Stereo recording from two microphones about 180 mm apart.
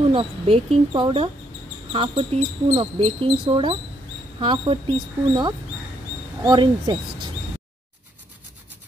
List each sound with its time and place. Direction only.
0.1 s speech: 30° right (ahead or behind)